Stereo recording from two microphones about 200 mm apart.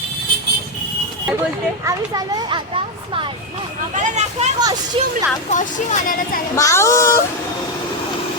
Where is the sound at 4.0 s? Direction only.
35° right (ahead or behind).